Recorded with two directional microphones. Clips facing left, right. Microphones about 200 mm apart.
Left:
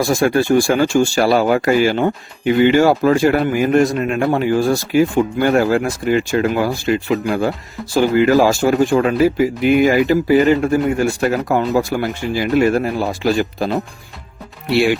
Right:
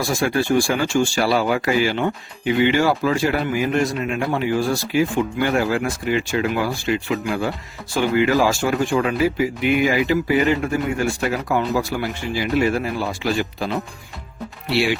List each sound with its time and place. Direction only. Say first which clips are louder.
0.1 s speech: left 4 dB; 45° left (ahead or behind)